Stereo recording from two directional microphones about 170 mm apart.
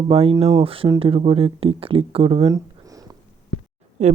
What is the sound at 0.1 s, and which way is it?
Speech, 35° right (ahead or behind).